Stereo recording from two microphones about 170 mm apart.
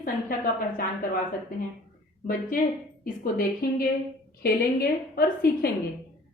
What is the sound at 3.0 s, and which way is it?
A woman's voice, 60° left (ahead or behind).